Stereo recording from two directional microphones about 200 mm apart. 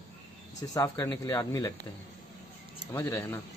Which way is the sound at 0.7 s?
15° left (ahead or behind).